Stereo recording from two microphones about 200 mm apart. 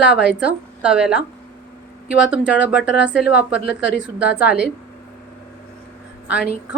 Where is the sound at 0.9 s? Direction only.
5° right (ahead or behind).